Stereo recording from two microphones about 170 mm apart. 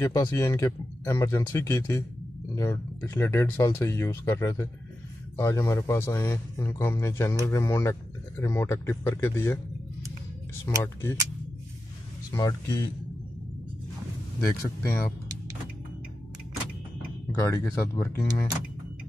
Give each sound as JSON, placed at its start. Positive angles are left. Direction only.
{"t": 0.0, "sound": "speech", "side_deg": 15}
{"t": 10.8, "sound": "speech", "side_deg": 15}
{"t": 12.3, "sound": "speech", "side_deg": 20}
{"t": 14.4, "sound": "speech", "side_deg": 20}
{"t": 17.3, "sound": "speech", "side_deg": 20}